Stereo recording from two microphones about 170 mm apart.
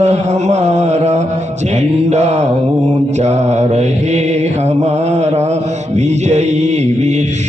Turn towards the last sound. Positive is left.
turn(degrees=-40)  # may be behind; listen again after turning